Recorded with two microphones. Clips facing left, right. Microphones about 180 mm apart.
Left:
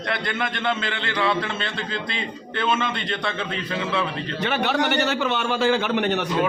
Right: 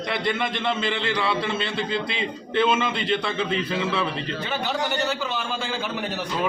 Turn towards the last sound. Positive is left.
turn(degrees=70)  # may be behind; listen again after turning